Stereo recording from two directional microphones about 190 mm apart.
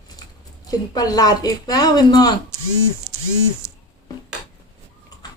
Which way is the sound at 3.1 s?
5° right (ahead or behind).